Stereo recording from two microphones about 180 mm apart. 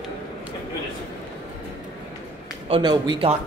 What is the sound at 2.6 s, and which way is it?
Speech, 25° right (ahead or behind).